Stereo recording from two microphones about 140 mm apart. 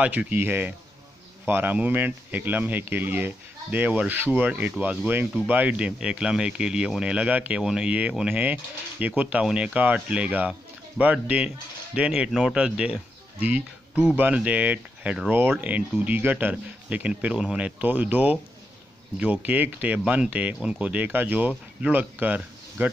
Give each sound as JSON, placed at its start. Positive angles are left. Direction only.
{"t": 0.0, "sound": "speech", "side_deg": -10}